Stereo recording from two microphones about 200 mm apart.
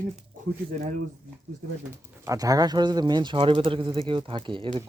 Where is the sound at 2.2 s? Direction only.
15° right (ahead or behind).